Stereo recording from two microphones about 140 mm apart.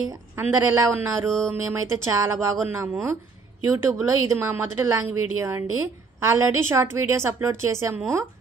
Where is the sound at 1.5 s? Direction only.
20° right (ahead or behind).